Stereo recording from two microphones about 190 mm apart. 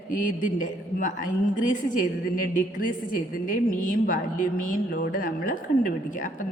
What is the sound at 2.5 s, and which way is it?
A woman's voice, 45° left (ahead or behind).